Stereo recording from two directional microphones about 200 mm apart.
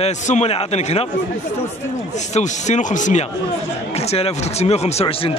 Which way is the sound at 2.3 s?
35° left (ahead or behind).